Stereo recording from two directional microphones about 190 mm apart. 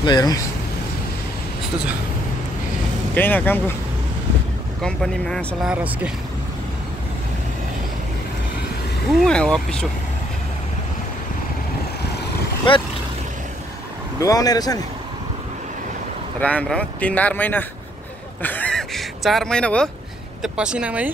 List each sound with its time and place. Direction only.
0.0 s speech: 20° left (ahead or behind)
3.2 s speech: 10° left (ahead or behind)
4.8 s speech: 5° left (ahead or behind)
9.2 s speech: 5° left (ahead or behind)
12.7 s speech: 25° left (ahead or behind)
14.2 s speech: 20° left (ahead or behind)
16.3 s speech: 5° left (ahead or behind)
18.4 s a sound: 10° left (ahead or behind)
20.4 s speech: 5° right (ahead or behind)